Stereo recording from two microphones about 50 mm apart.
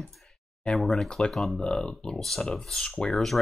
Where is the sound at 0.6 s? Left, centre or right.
Centre.